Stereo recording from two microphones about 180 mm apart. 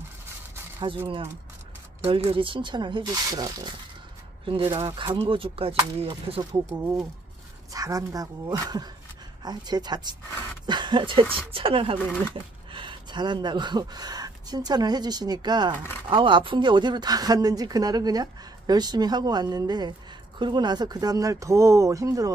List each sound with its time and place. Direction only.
0.7 s speech: 30° right (ahead or behind)
7.7 s speech: 20° right (ahead or behind)